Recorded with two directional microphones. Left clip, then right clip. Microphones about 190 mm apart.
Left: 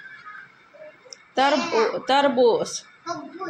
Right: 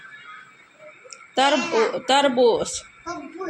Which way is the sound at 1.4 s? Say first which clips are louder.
Right 1 dB; 10° right (ahead or behind).